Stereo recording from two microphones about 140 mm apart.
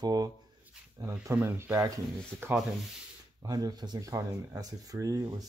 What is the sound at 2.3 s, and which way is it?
Speech, 5° left (ahead or behind).